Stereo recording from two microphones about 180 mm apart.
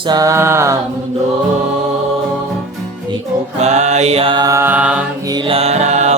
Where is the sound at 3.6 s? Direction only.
40° right (ahead or behind); by 5.0 s 5° right (ahead or behind).